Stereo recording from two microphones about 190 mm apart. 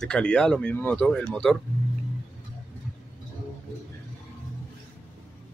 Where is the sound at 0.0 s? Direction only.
5° left (ahead or behind).